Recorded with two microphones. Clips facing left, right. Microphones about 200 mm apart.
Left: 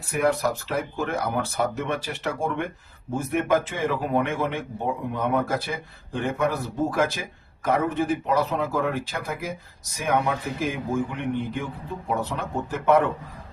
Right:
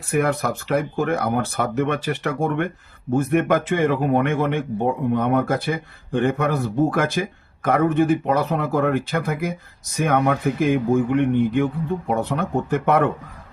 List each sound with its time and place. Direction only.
0.1 s speech: 55° right (ahead or behind)